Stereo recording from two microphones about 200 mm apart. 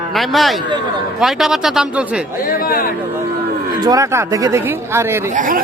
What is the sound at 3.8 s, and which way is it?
Speech, 20° right (ahead or behind).